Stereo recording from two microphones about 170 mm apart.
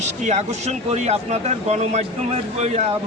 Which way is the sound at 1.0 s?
40° right (ahead or behind).